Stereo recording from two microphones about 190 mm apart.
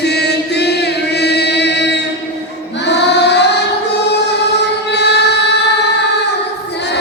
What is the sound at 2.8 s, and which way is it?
Choir, 65° left (ahead or behind).